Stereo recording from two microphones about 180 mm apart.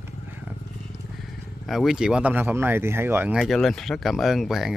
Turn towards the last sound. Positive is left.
turn(degrees=0)  # may be behind; listen again after turning